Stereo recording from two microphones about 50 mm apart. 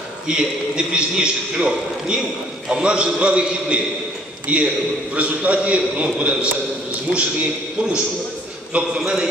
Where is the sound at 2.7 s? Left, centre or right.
Centre.